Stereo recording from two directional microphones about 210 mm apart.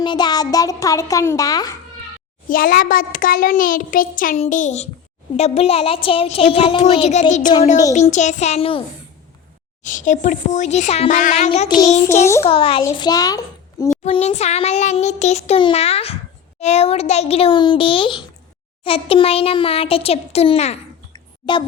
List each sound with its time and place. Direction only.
0.0 s a child's voice: 20° left (ahead or behind)
2.5 s a child's voice: 45° left (ahead or behind); by 8.8 s 30° left (ahead or behind)
9.8 s a child's voice: 35° left (ahead or behind)
12.2 s a child's voice: 15° left (ahead or behind)
12.5 s speech: 25° left (ahead or behind)
14.0 s a child's voice: 30° left (ahead or behind)
21.1 s a sound: 20° left (ahead or behind)